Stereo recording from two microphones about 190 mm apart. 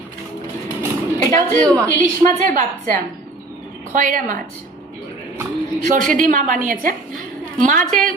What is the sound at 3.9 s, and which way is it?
Speech, 45° right (ahead or behind).